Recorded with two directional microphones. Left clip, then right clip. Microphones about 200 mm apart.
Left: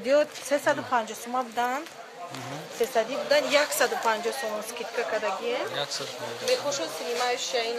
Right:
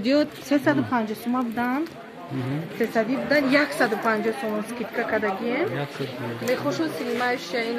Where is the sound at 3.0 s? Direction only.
35° left (ahead or behind).